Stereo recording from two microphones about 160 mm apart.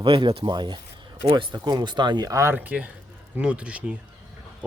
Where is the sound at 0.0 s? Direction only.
30° right (ahead or behind).